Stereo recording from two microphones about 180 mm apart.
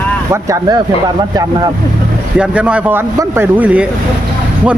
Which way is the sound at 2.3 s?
5° right (ahead or behind).